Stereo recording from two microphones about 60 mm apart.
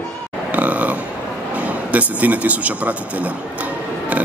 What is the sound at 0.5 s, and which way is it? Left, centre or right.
Burping, right.